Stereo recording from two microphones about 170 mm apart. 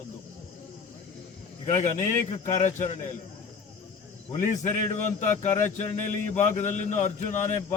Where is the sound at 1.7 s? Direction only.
45° left (ahead or behind).